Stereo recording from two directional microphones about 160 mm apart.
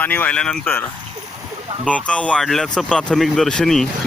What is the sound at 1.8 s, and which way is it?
Speech, 5° left (ahead or behind).